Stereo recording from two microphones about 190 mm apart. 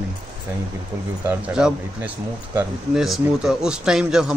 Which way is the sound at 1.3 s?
5° right (ahead or behind).